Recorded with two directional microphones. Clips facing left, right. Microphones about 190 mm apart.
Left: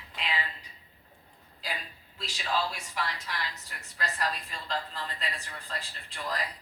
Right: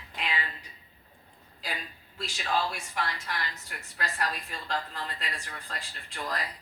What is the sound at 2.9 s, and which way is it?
A woman's voice, 55° right (ahead or behind).